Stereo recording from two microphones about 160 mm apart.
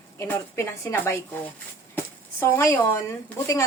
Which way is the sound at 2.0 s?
15° left (ahead or behind).